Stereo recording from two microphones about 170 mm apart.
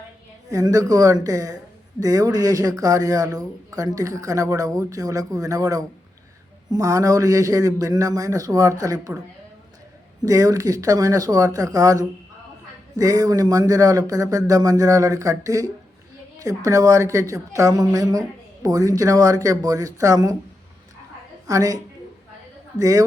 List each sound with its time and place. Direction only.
0.5 s a woman's voice: 20° right (ahead or behind)
10.2 s a woman's voice: 20° right (ahead or behind)
21.4 s a woman's voice: 20° right (ahead or behind)
22.8 s a woman's voice: 20° right (ahead or behind)